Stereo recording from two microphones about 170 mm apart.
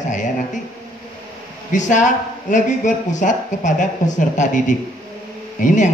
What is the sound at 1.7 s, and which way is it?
Speech, 45° left (ahead or behind).